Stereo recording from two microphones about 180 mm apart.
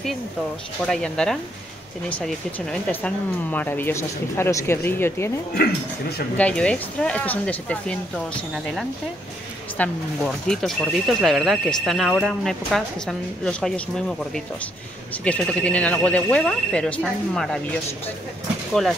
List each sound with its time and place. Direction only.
0.8 s speech: 5° left (ahead or behind)
5.5 s speech: 60° left (ahead or behind)
6.3 s speech: 5° left (ahead or behind)
18.7 s speech: centre (ahead or behind)